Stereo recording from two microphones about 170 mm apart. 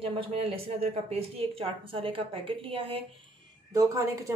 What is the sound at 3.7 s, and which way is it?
Speech, 20° right (ahead or behind).